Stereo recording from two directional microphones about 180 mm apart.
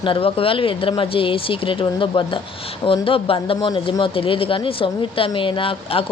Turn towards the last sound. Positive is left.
turn(degrees=30)  # may be behind; listen again after turning